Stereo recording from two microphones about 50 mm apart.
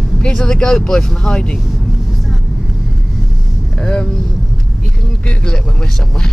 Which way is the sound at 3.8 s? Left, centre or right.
Centre.